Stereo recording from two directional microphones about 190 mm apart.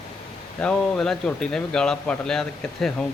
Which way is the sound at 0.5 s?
5° left (ahead or behind).